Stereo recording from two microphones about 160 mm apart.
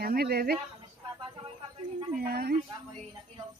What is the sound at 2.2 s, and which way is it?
Speech, 70° right (ahead or behind).